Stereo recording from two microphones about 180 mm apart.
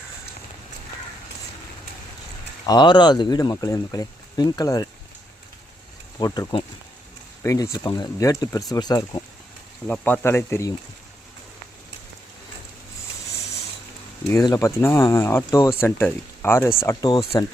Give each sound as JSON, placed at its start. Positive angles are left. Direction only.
{"t": 2.6, "sound": "speech", "side_deg": 25}
{"t": 6.1, "sound": "speech", "side_deg": 20}
{"t": 9.8, "sound": "speech", "side_deg": 10}
{"t": 13.3, "sound": "a sound", "side_deg": 65}
{"t": 14.3, "sound": "speech", "side_deg": 20}